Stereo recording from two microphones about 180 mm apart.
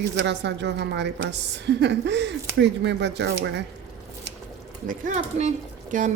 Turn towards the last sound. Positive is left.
turn(degrees=-45)  # may be behind; listen again after turning